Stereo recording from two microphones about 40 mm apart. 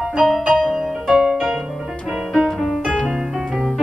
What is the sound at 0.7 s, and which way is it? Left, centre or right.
Music, centre.